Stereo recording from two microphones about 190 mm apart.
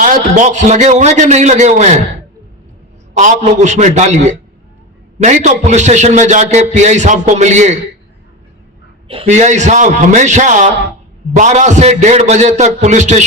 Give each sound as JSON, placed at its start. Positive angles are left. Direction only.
{"t": 0.0, "sound": "a man's voice", "side_deg": -40}
{"t": 3.2, "sound": "a man's voice", "side_deg": -40}
{"t": 9.0, "sound": "a man's voice", "side_deg": -35}